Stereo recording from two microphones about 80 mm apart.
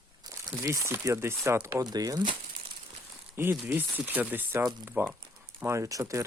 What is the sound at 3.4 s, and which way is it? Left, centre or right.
Speech, right.